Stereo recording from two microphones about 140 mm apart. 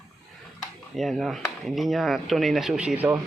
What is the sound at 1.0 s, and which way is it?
Speech, centre (ahead or behind).